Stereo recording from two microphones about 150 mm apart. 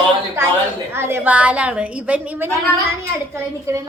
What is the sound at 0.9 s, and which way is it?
A woman's voice, 15° right (ahead or behind).